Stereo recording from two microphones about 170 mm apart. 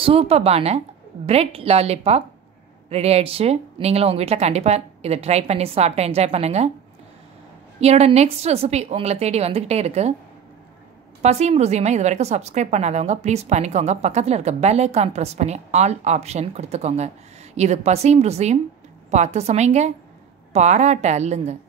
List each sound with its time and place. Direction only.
0.0 s a woman's voice: 35° right (ahead or behind)
7.8 s a woman's voice: 40° right (ahead or behind)
11.2 s a woman's voice: 40° right (ahead or behind)